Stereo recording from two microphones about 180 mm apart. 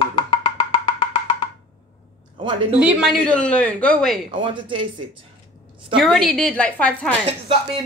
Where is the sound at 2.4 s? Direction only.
30° right (ahead or behind).